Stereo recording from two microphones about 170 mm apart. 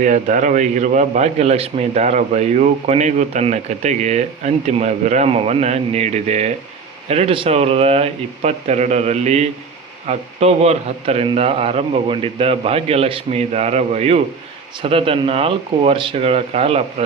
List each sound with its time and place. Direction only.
0.0 s a man's voice: 45° right (ahead or behind)